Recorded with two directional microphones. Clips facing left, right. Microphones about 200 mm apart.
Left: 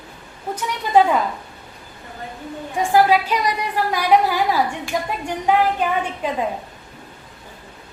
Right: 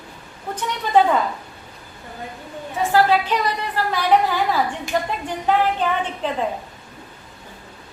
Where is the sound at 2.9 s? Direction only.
10° left (ahead or behind).